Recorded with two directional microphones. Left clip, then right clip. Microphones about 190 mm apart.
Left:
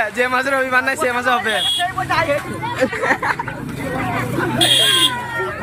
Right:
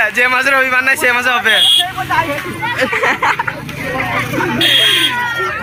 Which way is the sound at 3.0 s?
40° right (ahead or behind).